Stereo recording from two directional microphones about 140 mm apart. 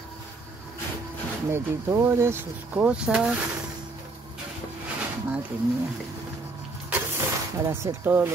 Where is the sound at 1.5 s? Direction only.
20° right (ahead or behind).